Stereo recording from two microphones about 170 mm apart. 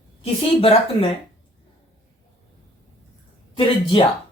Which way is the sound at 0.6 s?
35° left (ahead or behind).